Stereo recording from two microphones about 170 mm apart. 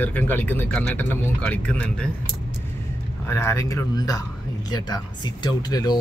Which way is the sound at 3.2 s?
15° left (ahead or behind).